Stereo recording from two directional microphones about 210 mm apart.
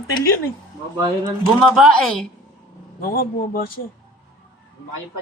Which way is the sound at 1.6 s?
Centre (ahead or behind).